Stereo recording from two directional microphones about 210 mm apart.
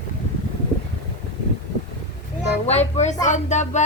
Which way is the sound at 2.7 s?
30° left (ahead or behind).